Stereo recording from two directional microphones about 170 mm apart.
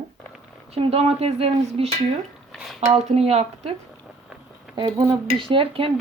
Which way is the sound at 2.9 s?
40° right (ahead or behind).